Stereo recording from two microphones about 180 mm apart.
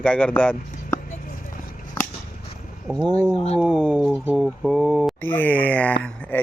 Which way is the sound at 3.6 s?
5° right (ahead or behind).